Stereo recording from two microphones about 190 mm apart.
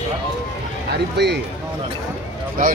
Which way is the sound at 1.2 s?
60° right (ahead or behind).